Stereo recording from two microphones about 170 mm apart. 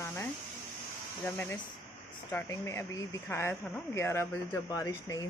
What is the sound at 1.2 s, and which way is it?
Speech, 10° left (ahead or behind).